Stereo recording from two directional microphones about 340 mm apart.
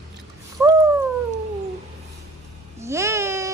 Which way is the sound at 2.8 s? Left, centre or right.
Centre.